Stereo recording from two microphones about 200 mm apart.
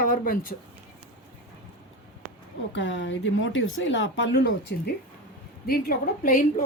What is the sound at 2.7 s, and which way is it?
Speech, 65° left (ahead or behind).